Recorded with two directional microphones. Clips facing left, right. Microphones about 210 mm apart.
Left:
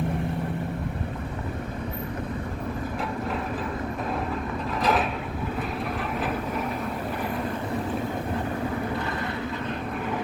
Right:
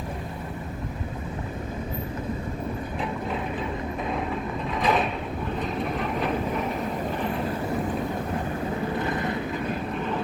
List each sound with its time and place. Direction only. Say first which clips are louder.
4.8 s mechanisms: even; centre (ahead or behind)
6.0 s vehicle: right 2 dB; 5° left (ahead or behind)
9.0 s vehicle: right 3 dB; 20° right (ahead or behind)